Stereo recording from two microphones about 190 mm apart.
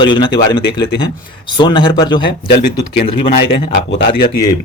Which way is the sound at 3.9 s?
65° left (ahead or behind).